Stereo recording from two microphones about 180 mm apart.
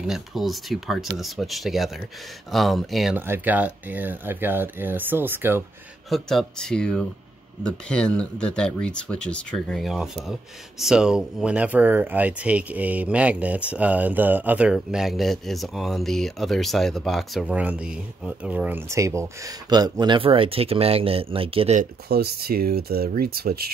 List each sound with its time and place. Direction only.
0.0 s speech: centre (ahead or behind)
6.0 s speech: centre (ahead or behind); by 21.7 s 30° right (ahead or behind)
22.1 s speech: 60° right (ahead or behind)